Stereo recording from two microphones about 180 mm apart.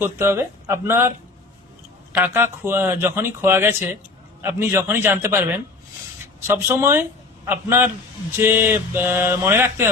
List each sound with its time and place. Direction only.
0.0 s speech: 15° right (ahead or behind)
2.1 s speech: 10° right (ahead or behind)
6.5 s speech: 10° right (ahead or behind)